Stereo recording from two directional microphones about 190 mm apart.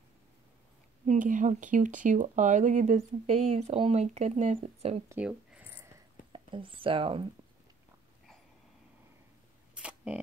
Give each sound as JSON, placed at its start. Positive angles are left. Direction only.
{"t": 1.0, "sound": "speech", "side_deg": -45}
{"t": 5.1, "sound": "a sound", "side_deg": -5}
{"t": 6.3, "sound": "speech", "side_deg": -25}
{"t": 9.8, "sound": "camera", "side_deg": -5}